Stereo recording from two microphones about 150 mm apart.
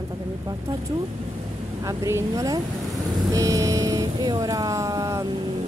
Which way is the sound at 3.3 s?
20° right (ahead or behind).